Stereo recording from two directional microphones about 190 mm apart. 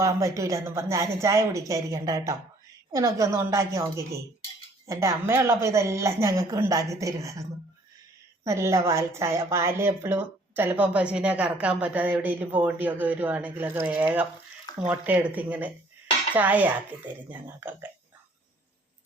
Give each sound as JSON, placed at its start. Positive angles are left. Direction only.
{"t": 0.0, "sound": "a woman's voice", "side_deg": -15}
{"t": 4.9, "sound": "a woman's voice", "side_deg": -15}
{"t": 8.4, "sound": "a woman's voice", "side_deg": -15}